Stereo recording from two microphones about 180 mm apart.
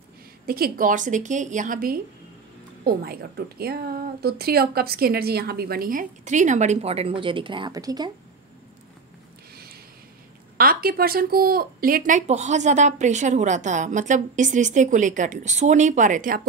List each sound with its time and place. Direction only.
0.5 s a woman's voice: 55° right (ahead or behind); by 8.1 s 20° right (ahead or behind)
10.6 s speech: 55° right (ahead or behind)